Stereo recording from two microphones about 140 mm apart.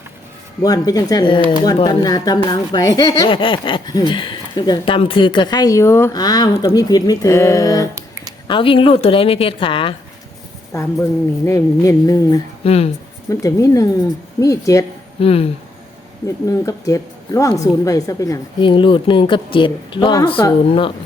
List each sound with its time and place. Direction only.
0.6 s a woman's voice: 25° left (ahead or behind)
8.4 s speech: 35° left (ahead or behind)
10.7 s a woman's voice: 20° left (ahead or behind)
12.6 s speech: 45° left (ahead or behind)
13.4 s a woman's voice: 25° left (ahead or behind)
15.2 s speech: 45° left (ahead or behind)
16.5 s a woman's voice: 25° left (ahead or behind)
18.6 s speech: 35° left (ahead or behind)